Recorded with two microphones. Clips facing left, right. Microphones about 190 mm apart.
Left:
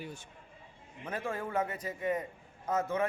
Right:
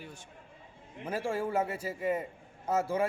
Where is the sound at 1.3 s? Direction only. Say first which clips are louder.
Right 3 dB; 10° right (ahead or behind).